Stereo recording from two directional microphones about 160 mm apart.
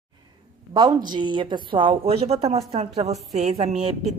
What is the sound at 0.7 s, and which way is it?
Speech, 25° right (ahead or behind).